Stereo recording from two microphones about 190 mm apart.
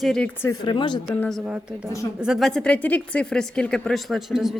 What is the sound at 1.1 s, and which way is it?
A woman's voice, centre (ahead or behind).